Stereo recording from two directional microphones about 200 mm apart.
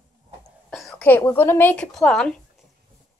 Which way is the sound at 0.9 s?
10° left (ahead or behind).